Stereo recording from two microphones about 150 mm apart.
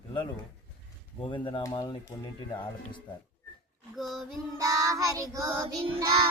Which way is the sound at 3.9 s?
Centre (ahead or behind).